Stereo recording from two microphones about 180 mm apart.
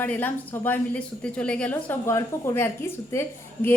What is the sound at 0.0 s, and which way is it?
Speech, 10° left (ahead or behind).